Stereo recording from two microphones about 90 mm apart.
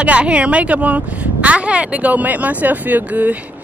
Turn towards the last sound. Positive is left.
turn(degrees=-15)  # may be behind; listen again after turning